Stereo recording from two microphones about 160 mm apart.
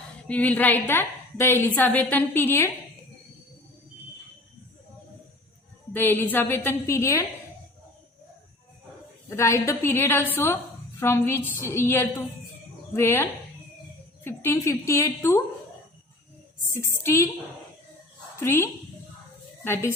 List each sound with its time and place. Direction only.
0.3 s a woman's voice: 10° left (ahead or behind)
5.9 s a woman's voice: 10° left (ahead or behind)
9.3 s a woman's voice: 15° left (ahead or behind)
14.3 s a woman's voice: 15° left (ahead or behind)
16.8 s a woman's voice: 15° left (ahead or behind)
18.4 s a woman's voice: 15° left (ahead or behind)